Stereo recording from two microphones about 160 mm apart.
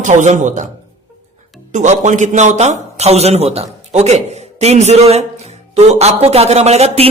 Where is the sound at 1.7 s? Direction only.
50° right (ahead or behind).